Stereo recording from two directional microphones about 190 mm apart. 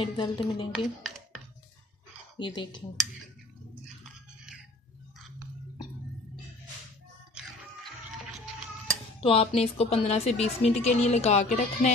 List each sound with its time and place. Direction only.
0.0 s speech: 25° left (ahead or behind)
0.7 s speech: centre (ahead or behind)
2.3 s speech: 25° left (ahead or behind)
9.2 s a woman's voice: 30° left (ahead or behind)